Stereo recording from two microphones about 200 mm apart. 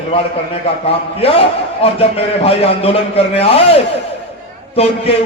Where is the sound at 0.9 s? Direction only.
30° left (ahead or behind).